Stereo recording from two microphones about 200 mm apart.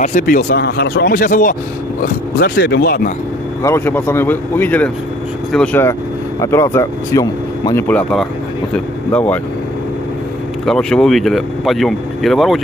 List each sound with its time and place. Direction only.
0.0 s speech: 40° left (ahead or behind)
0.5 s speech: 55° left (ahead or behind)
3.6 s speech: 10° left (ahead or behind)
10.6 s speech: 5° left (ahead or behind)